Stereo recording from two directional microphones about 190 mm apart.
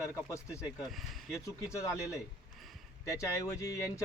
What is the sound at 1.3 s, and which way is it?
Speech, 15° left (ahead or behind).